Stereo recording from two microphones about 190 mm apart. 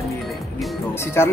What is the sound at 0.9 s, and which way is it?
Speech, 15° left (ahead or behind).